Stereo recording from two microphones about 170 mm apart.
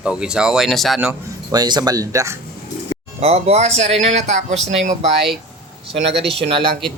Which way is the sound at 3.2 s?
35° right (ahead or behind).